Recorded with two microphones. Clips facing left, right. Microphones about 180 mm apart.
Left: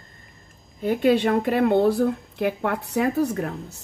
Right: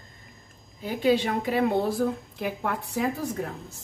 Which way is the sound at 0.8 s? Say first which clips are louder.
Left 4 dB; 60° left (ahead or behind).